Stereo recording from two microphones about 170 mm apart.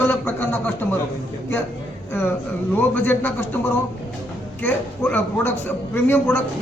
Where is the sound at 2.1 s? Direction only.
15° left (ahead or behind).